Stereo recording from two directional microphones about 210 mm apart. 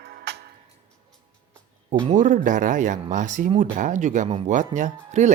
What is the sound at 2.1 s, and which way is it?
Speech, 40° right (ahead or behind).